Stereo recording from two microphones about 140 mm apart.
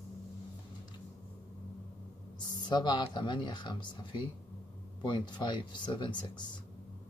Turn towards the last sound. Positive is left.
turn(degrees=35)  # may be behind; listen again after turning